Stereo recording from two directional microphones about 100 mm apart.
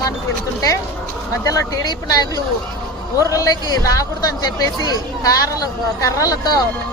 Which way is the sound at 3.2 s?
35° left (ahead or behind).